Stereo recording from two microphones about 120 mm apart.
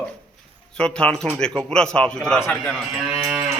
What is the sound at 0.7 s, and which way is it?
A man's voice, 5° left (ahead or behind).